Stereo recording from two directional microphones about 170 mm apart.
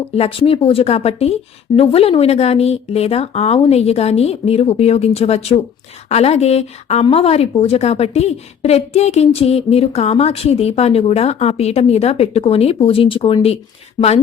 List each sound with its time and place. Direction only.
0.2 s speech: 35° left (ahead or behind)